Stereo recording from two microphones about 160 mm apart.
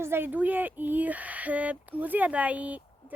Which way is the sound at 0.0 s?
15° right (ahead or behind).